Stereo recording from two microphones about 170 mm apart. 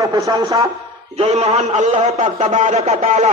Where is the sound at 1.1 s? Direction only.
35° right (ahead or behind).